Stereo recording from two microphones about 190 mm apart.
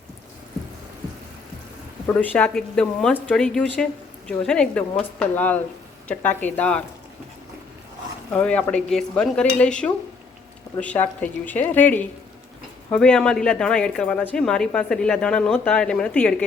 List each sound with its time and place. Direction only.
2.1 s a woman's voice: 10° left (ahead or behind)
8.3 s a woman's voice: 5° left (ahead or behind)